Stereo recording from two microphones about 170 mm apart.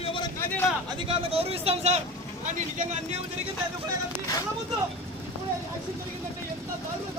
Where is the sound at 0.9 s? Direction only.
35° right (ahead or behind).